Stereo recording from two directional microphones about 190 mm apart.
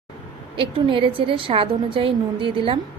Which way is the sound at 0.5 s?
25° right (ahead or behind).